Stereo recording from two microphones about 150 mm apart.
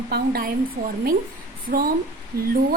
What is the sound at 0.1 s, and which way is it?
Speech, 85° right.